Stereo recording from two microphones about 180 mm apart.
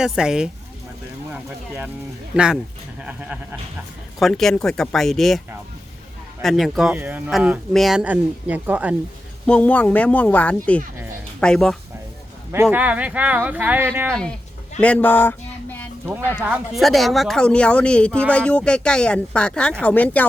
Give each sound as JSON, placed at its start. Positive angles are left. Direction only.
{"t": 0.0, "sound": "speech", "side_deg": -5}
{"t": 6.4, "sound": "speech", "side_deg": 0}
{"t": 9.5, "sound": "speech", "side_deg": 10}
{"t": 12.7, "sound": "speech", "side_deg": -10}
{"t": 14.1, "sound": "speech", "side_deg": 5}
{"t": 14.8, "sound": "a sound", "side_deg": 10}
{"t": 16.4, "sound": "speech", "side_deg": -5}